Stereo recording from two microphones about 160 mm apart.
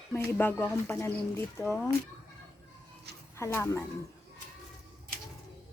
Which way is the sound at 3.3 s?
15° left (ahead or behind).